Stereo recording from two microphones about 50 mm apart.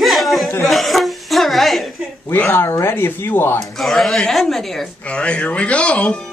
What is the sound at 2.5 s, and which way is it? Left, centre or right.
Speech, left.